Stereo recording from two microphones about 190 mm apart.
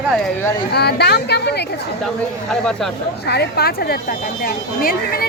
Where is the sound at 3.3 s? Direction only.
55° left (ahead or behind).